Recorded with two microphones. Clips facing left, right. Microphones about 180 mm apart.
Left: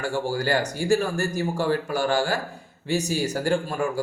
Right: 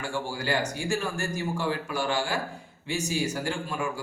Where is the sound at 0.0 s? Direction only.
40° left (ahead or behind).